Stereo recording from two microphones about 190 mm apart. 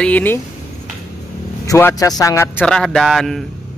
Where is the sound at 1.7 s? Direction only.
15° left (ahead or behind).